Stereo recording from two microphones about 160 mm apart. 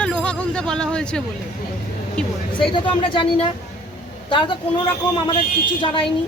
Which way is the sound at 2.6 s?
30° left (ahead or behind).